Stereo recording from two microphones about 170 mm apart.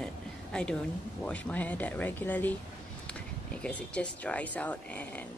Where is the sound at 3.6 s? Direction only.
5° left (ahead or behind).